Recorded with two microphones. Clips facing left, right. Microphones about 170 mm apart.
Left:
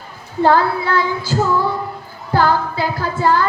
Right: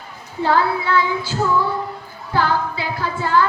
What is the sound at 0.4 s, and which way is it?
Child singing, 40° left (ahead or behind).